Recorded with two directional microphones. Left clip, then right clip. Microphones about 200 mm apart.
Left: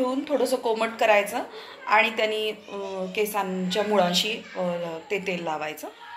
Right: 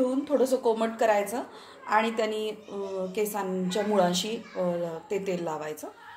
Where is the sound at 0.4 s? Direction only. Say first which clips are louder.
Even; 40° right (ahead or behind).